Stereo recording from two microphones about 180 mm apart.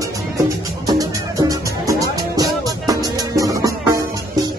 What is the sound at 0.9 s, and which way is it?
Music, 20° right (ahead or behind).